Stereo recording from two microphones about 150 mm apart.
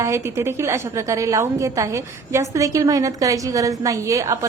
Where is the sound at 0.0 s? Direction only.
20° right (ahead or behind).